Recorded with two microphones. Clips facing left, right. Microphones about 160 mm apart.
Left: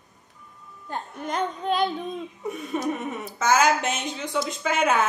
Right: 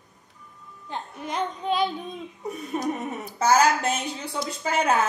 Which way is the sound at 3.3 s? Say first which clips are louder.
Right 1 dB; 35° right (ahead or behind).